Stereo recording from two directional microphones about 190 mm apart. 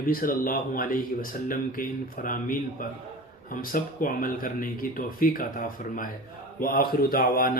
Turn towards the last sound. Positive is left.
turn(degrees=50)  # may be behind; listen again after turning